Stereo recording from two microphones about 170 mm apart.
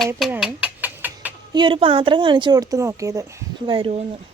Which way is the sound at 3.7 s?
30° right (ahead or behind).